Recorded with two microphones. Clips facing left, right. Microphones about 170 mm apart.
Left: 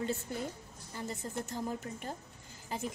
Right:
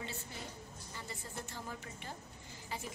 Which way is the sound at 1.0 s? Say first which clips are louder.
Left 9 dB; 40° left (ahead or behind).